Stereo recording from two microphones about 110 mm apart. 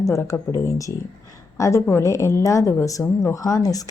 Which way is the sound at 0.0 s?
25° left (ahead or behind).